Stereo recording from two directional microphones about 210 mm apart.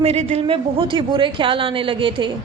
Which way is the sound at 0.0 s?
30° right (ahead or behind).